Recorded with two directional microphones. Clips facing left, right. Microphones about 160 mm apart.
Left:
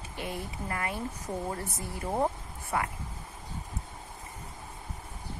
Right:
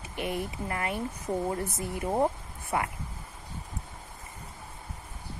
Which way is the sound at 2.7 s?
20° right (ahead or behind).